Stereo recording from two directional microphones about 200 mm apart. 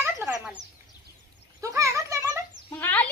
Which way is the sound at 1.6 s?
15° right (ahead or behind).